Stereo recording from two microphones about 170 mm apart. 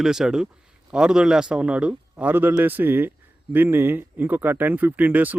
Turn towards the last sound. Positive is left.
turn(degrees=-10)  # may be behind; listen again after turning